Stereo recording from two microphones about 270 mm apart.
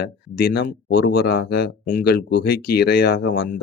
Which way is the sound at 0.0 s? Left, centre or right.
Left.